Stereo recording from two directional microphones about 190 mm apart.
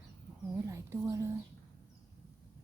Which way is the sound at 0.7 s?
15° right (ahead or behind).